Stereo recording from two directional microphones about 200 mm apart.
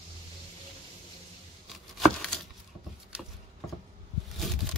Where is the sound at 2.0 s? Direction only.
Centre (ahead or behind).